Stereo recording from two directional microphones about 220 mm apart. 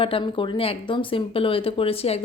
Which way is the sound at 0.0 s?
25° left (ahead or behind).